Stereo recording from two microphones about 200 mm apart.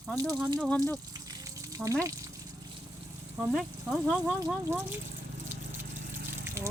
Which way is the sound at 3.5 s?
Centre (ahead or behind).